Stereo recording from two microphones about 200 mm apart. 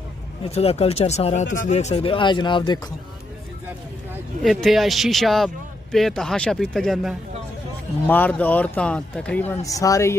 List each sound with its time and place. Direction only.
0.5 s speech: 30° left (ahead or behind)
4.4 s a man's voice: centre (ahead or behind); by 10.1 s 15° left (ahead or behind)